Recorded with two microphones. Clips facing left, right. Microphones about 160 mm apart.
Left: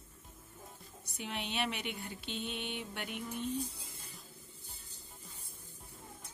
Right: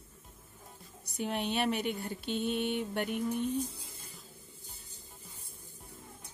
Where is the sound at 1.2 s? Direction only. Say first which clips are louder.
Right 6 dB; 45° right (ahead or behind).